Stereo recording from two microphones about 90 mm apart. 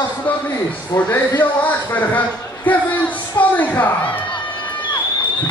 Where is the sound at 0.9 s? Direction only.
20° left (ahead or behind).